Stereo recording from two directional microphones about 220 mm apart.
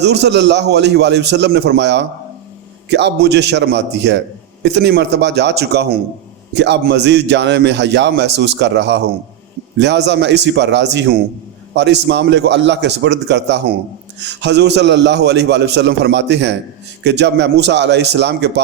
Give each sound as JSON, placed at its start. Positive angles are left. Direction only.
{"t": 0.0, "sound": "a man's voice", "side_deg": -50}